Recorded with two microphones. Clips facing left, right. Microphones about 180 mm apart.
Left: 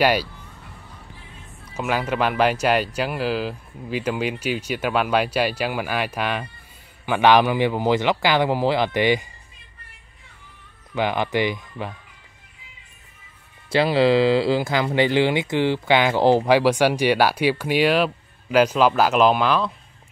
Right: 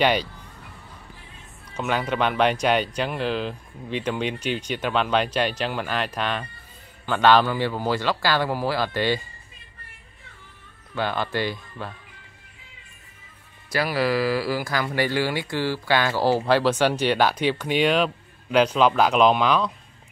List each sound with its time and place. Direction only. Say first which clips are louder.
0.0 s speech: left 2 dB; 5° left (ahead or behind)
1.7 s speech: left 1 dB; 5° left (ahead or behind)
11.0 s speech: left 4 dB; 15° left (ahead or behind)
13.7 s speech: left 6 dB; 25° left (ahead or behind); by 19.7 s 5° left (ahead or behind)